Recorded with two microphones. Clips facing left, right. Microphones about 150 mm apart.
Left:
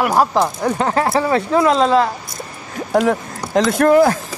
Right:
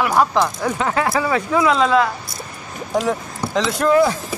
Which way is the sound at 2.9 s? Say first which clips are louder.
Left 4 dB; 55° left (ahead or behind).